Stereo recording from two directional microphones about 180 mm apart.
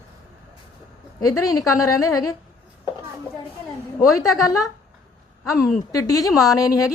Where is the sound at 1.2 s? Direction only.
20° left (ahead or behind).